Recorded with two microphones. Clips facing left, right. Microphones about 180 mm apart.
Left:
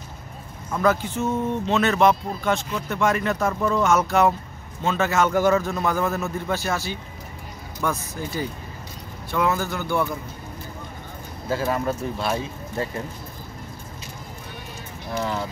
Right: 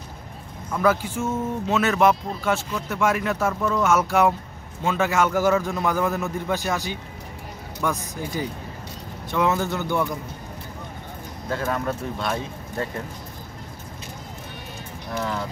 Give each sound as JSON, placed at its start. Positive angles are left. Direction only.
{"t": 0.7, "sound": "a man's voice", "side_deg": -10}
{"t": 11.4, "sound": "speech", "side_deg": 5}
{"t": 15.0, "sound": "speech", "side_deg": 5}